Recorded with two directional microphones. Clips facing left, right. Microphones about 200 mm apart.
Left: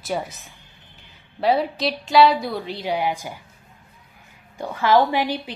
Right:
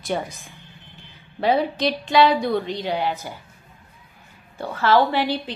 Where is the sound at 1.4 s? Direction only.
Centre (ahead or behind).